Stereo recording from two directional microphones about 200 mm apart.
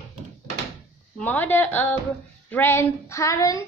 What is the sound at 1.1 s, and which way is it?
Speech, 10° left (ahead or behind).